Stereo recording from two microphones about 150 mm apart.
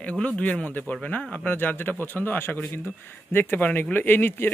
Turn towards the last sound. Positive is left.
turn(degrees=15)  # may be behind; listen again after turning